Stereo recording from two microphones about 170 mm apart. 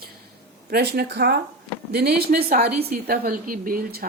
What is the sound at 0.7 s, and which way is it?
A woman's voice, 70° right (ahead or behind).